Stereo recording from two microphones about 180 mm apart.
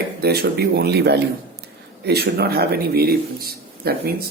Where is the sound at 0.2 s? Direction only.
60° right (ahead or behind).